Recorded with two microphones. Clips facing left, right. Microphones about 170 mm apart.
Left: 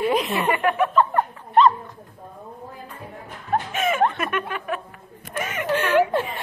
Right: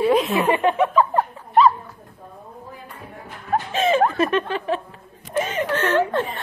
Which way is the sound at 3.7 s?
30° right (ahead or behind).